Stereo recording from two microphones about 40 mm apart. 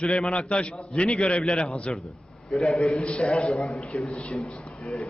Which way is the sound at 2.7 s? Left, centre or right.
Left.